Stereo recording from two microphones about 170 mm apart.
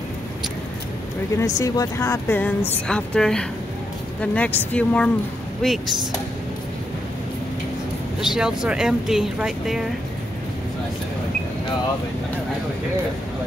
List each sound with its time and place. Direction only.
1.3 s speech: 20° left (ahead or behind); by 5.9 s centre (ahead or behind)
8.2 s speech: 5° right (ahead or behind)